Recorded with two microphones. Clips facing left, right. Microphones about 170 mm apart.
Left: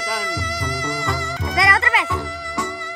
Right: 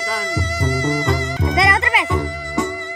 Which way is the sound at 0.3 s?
25° right (ahead or behind).